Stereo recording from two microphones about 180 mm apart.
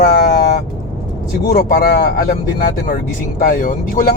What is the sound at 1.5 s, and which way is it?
Speech, 55° left (ahead or behind).